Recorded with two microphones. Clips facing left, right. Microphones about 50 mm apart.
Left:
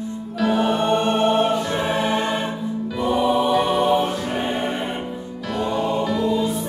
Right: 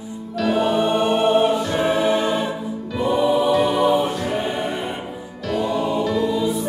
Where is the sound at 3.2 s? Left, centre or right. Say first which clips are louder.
Right 1 dB; left.